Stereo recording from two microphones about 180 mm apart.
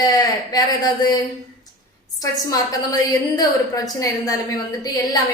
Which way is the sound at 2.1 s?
20° left (ahead or behind).